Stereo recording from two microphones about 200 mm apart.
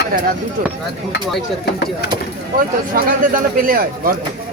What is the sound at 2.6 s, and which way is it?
Speech, 45° right (ahead or behind).